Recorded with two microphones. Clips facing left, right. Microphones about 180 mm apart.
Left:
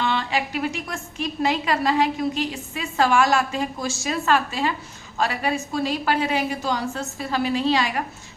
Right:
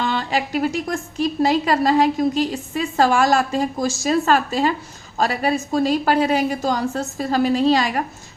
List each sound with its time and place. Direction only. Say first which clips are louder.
0.0 s a woman's voice: right 2 dB; 40° right (ahead or behind)